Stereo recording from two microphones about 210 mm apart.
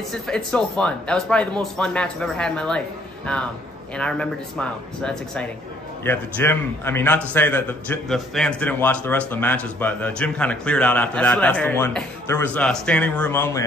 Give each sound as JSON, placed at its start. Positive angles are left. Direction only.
{"t": 0.1, "sound": "speech", "side_deg": 5}
{"t": 3.9, "sound": "a man's voice", "side_deg": 5}